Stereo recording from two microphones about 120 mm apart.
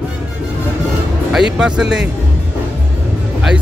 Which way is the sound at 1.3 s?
5° right (ahead or behind).